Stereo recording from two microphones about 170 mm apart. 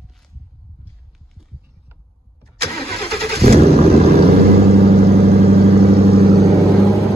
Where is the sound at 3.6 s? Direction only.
35° right (ahead or behind).